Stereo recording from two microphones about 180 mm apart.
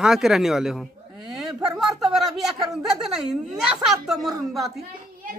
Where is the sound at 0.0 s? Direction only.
Centre (ahead or behind).